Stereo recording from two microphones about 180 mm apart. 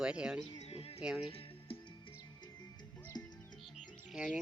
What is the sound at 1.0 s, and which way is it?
Speech, 5° right (ahead or behind).